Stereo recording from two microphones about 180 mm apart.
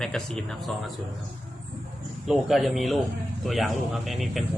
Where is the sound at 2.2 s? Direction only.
Centre (ahead or behind).